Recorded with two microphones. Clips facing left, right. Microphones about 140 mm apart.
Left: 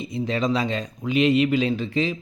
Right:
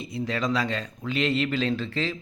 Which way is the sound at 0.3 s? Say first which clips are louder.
Left 3 dB; 20° left (ahead or behind).